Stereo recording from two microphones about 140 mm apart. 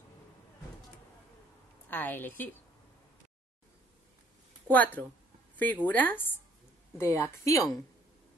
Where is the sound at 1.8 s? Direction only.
15° left (ahead or behind).